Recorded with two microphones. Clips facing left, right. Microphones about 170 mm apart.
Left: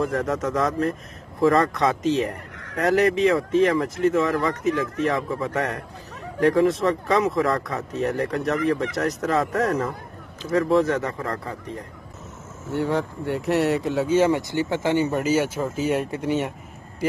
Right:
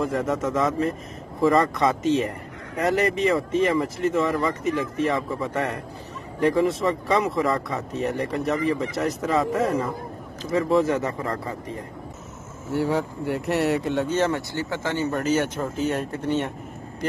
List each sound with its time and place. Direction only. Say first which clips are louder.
0.0 s speech: even; centre (ahead or behind)
12.7 s speech: even; centre (ahead or behind)